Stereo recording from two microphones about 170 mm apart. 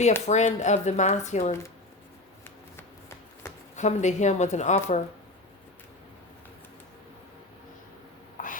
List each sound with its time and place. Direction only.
0.3 s speech: 45° left (ahead or behind)
3.4 s a sound: 15° left (ahead or behind)
3.8 s speech: 45° left (ahead or behind)